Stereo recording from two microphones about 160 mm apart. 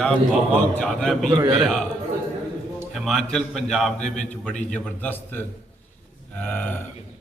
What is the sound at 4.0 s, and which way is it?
Speech, 50° left (ahead or behind).